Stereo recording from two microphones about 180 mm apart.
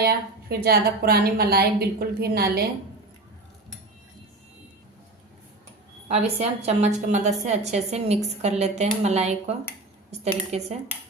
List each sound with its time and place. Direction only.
0.0 s a woman's voice: 60° right (ahead or behind)
6.1 s a woman's voice: 35° right (ahead or behind)